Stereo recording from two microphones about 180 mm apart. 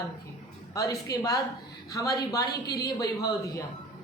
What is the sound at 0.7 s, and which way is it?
A woman's voice, 20° left (ahead or behind).